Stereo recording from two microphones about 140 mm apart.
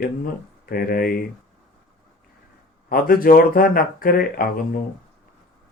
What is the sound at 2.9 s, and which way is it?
Speech, 90° left.